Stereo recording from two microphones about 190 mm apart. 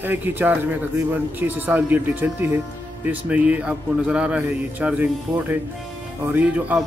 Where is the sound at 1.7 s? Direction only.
10° right (ahead or behind).